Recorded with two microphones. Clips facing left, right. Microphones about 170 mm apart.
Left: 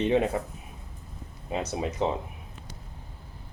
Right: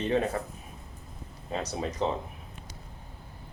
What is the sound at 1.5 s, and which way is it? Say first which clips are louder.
Speech: left 2 dB; 15° left (ahead or behind).